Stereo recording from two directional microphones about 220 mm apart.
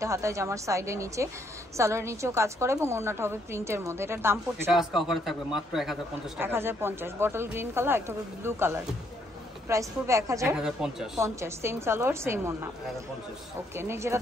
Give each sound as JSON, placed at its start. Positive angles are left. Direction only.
{"t": 0.0, "sound": "a woman's voice", "side_deg": -15}
{"t": 10.6, "sound": "a woman's voice", "side_deg": -5}
{"t": 13.7, "sound": "a woman's voice", "side_deg": -10}